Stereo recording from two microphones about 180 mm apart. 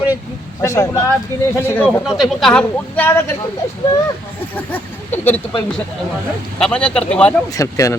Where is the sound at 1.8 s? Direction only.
5° right (ahead or behind).